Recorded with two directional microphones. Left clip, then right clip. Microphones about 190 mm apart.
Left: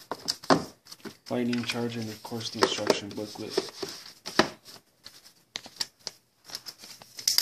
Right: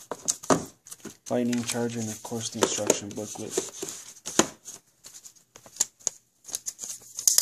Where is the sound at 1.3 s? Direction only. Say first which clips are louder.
Right 2 dB; 50° right (ahead or behind).